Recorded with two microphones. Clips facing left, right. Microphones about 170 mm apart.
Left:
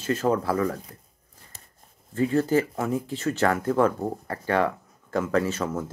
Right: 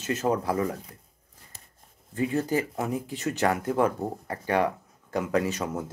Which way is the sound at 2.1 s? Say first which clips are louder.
Left 4 dB; 15° right (ahead or behind).